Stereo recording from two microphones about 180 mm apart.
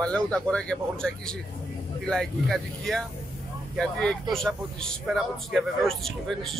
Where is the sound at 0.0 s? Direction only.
5° left (ahead or behind).